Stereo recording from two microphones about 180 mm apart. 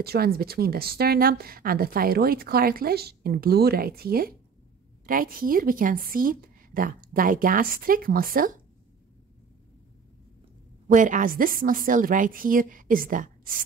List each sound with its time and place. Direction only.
0.0 s a woman's voice: 60° right (ahead or behind)
10.9 s a woman's voice: 45° right (ahead or behind)